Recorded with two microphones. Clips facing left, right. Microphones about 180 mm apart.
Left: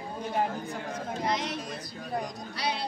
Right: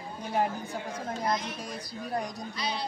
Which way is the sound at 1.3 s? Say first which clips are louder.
Even; 80° left.